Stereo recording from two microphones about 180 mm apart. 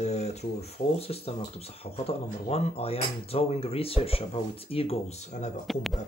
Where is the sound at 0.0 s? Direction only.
35° left (ahead or behind).